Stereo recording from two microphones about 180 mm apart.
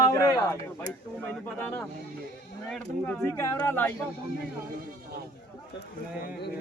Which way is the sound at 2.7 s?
5° left (ahead or behind).